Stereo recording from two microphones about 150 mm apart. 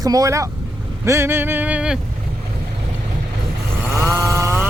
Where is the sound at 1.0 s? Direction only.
15° right (ahead or behind).